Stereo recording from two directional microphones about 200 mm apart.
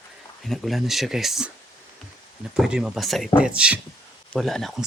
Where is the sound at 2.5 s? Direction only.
5° right (ahead or behind).